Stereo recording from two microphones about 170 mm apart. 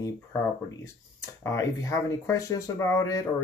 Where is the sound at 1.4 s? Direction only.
15° left (ahead or behind).